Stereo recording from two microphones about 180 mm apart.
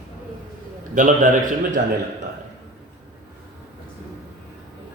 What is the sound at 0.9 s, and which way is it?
Speech, 45° right (ahead or behind).